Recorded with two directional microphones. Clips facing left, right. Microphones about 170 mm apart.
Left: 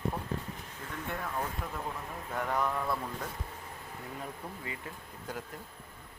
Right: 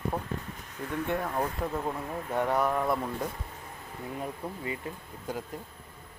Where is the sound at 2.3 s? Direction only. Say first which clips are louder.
Right 5 dB; 25° right (ahead or behind).